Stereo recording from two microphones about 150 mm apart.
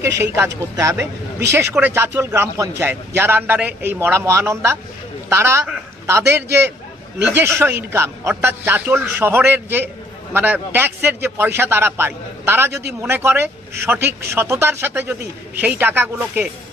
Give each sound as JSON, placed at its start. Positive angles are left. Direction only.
{"t": 0.0, "sound": "a man's voice", "side_deg": -15}